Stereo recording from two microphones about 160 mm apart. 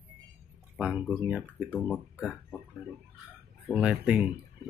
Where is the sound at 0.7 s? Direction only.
5° right (ahead or behind).